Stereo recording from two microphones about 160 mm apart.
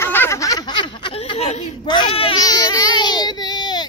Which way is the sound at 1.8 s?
30° left (ahead or behind).